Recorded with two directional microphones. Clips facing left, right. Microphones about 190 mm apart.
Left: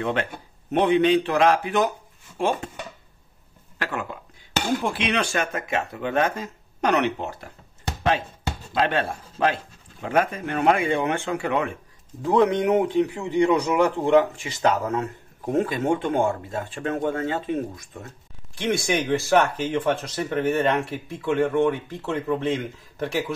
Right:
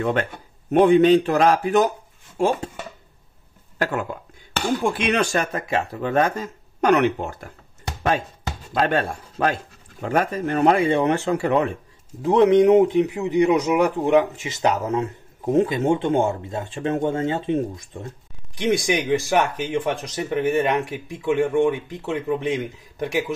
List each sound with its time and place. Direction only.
0.0 s speech: 45° right (ahead or behind)
3.7 s speech: 40° right (ahead or behind)
8.7 s speech: 45° right (ahead or behind)
12.3 s a man's voice: 25° right (ahead or behind)